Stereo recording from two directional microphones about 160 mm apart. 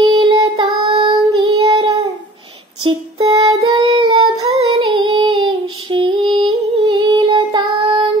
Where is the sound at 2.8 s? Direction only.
25° right (ahead or behind).